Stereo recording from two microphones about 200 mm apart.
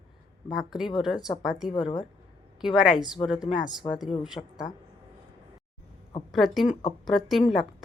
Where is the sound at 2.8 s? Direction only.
Centre (ahead or behind).